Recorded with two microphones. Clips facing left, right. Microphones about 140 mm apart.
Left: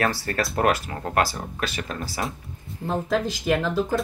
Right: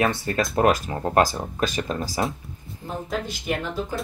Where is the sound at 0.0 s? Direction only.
20° right (ahead or behind).